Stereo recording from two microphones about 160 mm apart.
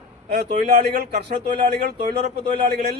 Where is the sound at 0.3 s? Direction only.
75° right (ahead or behind).